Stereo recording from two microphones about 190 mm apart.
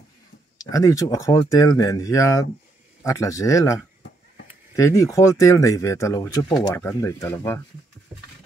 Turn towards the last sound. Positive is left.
turn(degrees=15)  # may be behind; listen again after turning